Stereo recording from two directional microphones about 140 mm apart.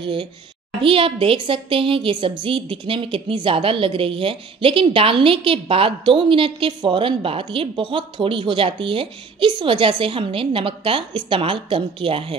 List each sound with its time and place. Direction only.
0.0 s a woman's voice: 35° right (ahead or behind)